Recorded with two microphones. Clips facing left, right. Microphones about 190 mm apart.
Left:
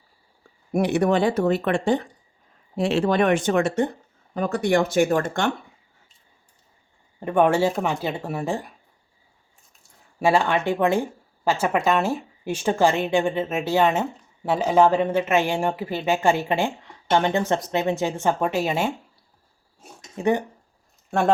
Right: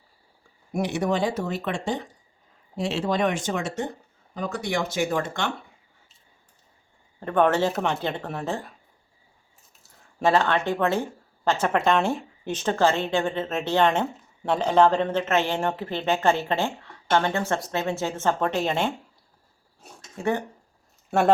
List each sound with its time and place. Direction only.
0.7 s speech: 60° left (ahead or behind)
7.2 s speech: 10° left (ahead or behind)
10.2 s speech: 10° left (ahead or behind)
20.0 s speech: 15° left (ahead or behind)